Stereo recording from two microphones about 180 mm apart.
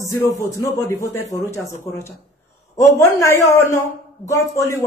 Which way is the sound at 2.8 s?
15° left (ahead or behind).